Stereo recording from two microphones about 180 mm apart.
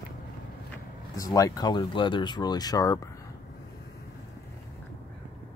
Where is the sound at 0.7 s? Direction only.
20° left (ahead or behind).